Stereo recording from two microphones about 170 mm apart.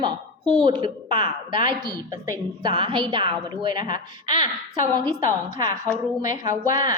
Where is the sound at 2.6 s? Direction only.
25° right (ahead or behind).